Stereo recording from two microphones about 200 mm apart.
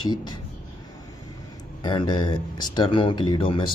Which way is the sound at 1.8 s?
20° left (ahead or behind).